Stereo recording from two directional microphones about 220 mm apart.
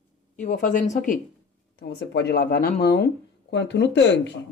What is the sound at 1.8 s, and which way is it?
Speech, 50° left (ahead or behind).